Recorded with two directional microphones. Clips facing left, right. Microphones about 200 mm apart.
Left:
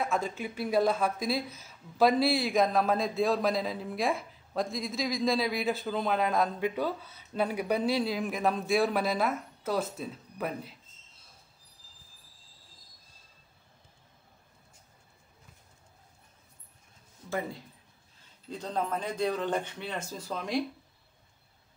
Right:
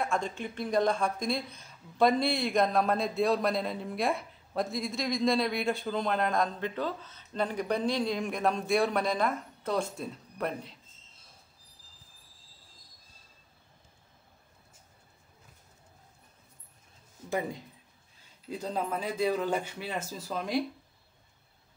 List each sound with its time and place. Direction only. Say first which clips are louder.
0.0 s a woman's voice: left 1 dB; 5° left (ahead or behind)
17.3 s a man's voice: right 2 dB; 15° right (ahead or behind)